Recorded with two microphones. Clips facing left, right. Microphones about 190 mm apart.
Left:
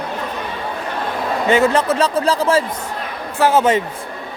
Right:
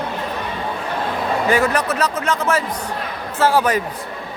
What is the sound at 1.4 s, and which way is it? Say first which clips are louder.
Speech: left 5 dB; 25° left (ahead or behind).